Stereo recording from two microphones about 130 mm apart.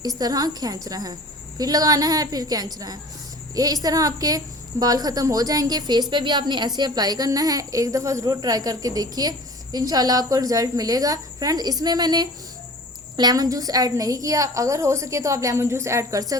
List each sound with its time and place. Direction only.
0.0 s a woman's voice: 30° right (ahead or behind)